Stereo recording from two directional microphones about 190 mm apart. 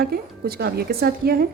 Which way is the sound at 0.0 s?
55° right (ahead or behind).